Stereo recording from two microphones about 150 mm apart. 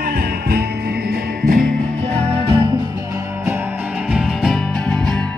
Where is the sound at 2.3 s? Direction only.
35° right (ahead or behind).